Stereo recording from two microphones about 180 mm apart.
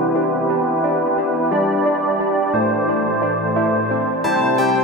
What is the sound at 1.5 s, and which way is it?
Music, centre (ahead or behind).